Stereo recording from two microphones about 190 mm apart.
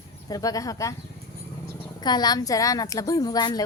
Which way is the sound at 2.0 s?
20° left (ahead or behind).